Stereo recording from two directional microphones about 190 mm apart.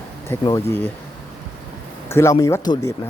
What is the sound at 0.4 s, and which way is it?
Speech, 15° left (ahead or behind).